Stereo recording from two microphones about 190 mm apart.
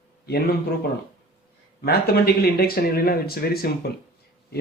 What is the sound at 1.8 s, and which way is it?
A man's voice, 55° left (ahead or behind).